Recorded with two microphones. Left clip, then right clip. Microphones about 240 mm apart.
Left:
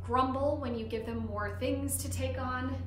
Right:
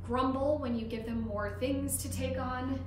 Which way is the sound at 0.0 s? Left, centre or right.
Centre.